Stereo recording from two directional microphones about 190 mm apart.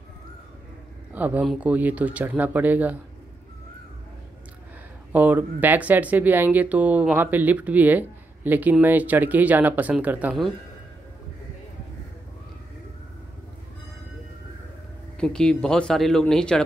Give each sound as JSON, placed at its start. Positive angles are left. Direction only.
{"t": 1.1, "sound": "speech", "side_deg": -10}
{"t": 5.1, "sound": "speech", "side_deg": -10}
{"t": 15.1, "sound": "speech", "side_deg": 5}